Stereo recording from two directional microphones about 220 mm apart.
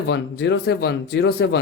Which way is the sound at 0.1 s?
50° left (ahead or behind).